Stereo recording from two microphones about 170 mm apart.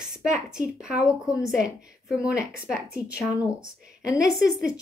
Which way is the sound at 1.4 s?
Centre (ahead or behind).